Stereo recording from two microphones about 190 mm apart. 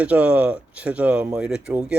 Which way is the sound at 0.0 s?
5° right (ahead or behind).